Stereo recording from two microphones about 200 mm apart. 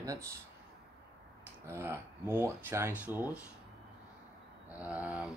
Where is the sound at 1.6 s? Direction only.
10° right (ahead or behind).